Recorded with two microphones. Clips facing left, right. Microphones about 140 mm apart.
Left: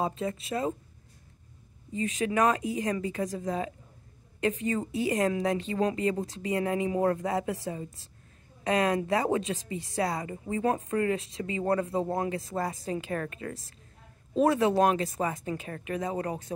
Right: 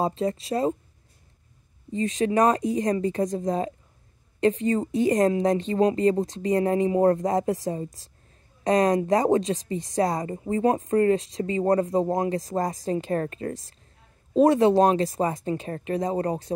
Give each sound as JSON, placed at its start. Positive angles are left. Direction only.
{"t": 0.0, "sound": "a woman's voice", "side_deg": -35}
{"t": 1.9, "sound": "a woman's voice", "side_deg": -35}